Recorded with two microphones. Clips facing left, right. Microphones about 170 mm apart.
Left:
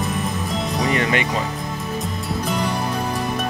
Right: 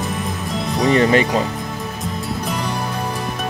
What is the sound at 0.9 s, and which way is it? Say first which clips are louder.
Speech: right 8 dB; 35° right (ahead or behind).